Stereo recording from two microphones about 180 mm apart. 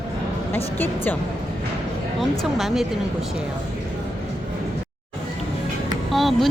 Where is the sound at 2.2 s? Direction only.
Centre (ahead or behind).